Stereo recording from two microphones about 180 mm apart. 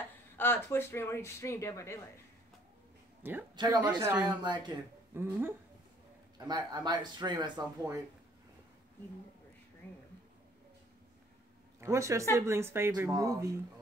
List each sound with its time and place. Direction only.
0.4 s speech: 10° left (ahead or behind)
3.2 s speech: 10° right (ahead or behind)
3.5 s a man's voice: 25° right (ahead or behind)
3.8 s speech: 10° right (ahead or behind)
4.3 s a man's voice: 25° right (ahead or behind)
5.1 s speech: 10° right (ahead or behind)
6.3 s a man's voice: 25° right (ahead or behind)
9.8 s speech: 10° left (ahead or behind)
11.8 s speech: 15° right (ahead or behind)